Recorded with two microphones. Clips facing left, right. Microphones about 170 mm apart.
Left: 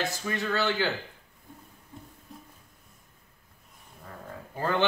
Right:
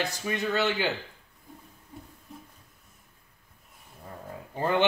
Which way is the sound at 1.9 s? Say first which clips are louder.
Right 1 dB; 10° right (ahead or behind).